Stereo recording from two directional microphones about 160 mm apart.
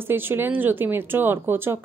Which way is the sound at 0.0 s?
15° right (ahead or behind).